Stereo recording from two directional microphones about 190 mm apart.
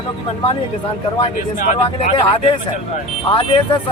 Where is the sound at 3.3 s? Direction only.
25° left (ahead or behind).